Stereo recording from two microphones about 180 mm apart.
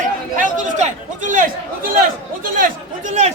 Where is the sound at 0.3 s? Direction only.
40° right (ahead or behind).